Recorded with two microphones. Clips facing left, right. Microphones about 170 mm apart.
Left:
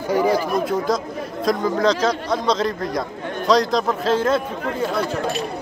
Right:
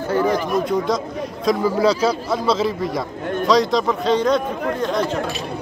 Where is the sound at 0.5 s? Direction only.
Centre (ahead or behind).